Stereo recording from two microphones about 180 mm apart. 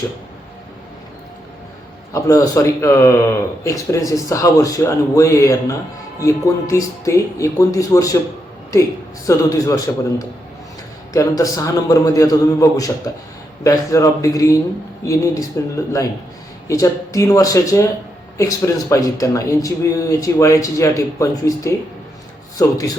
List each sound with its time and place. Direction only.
2.1 s speech: 20° left (ahead or behind)
9.2 s a man's voice: 20° left (ahead or behind)